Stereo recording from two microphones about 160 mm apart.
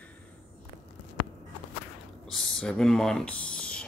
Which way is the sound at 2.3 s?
Centre (ahead or behind).